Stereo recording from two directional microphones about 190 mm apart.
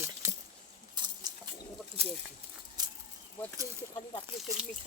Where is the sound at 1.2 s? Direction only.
20° right (ahead or behind).